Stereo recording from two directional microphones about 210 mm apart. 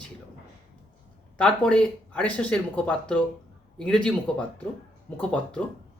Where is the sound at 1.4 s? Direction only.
5° left (ahead or behind).